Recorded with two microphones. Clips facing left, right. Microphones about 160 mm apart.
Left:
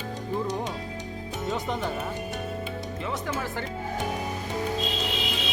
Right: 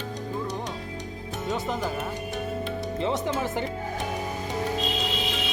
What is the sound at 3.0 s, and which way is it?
Speech, 25° right (ahead or behind).